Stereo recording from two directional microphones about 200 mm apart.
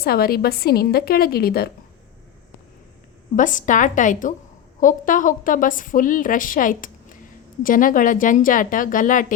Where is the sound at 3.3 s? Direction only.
40° left (ahead or behind).